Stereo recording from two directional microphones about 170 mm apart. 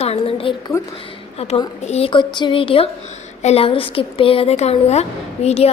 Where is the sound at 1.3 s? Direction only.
35° left (ahead or behind).